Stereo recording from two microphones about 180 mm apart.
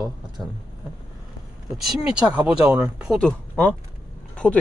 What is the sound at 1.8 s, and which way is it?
A man's voice, 5° right (ahead or behind).